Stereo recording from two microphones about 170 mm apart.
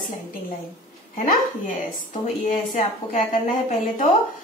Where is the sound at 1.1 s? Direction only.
50° left (ahead or behind).